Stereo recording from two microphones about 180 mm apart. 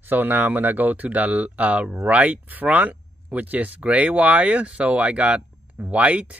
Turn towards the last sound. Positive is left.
turn(degrees=-10)  # may be behind; listen again after turning